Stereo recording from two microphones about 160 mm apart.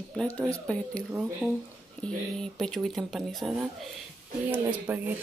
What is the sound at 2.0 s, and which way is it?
Speech, 5° left (ahead or behind).